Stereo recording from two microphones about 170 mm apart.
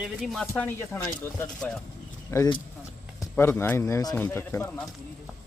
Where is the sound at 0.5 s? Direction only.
15° left (ahead or behind).